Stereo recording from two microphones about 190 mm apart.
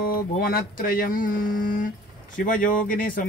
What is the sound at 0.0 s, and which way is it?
Speech, 50° left (ahead or behind).